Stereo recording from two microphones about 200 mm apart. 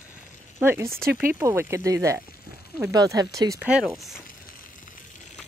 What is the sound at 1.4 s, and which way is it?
A woman's voice, 15° right (ahead or behind).